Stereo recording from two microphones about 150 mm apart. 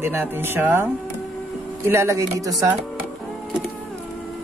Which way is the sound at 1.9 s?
20° right (ahead or behind).